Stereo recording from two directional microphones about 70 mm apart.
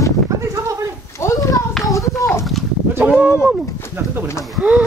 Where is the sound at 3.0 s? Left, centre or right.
Right.